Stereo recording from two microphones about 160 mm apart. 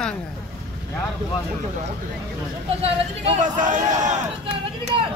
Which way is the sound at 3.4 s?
50° right (ahead or behind).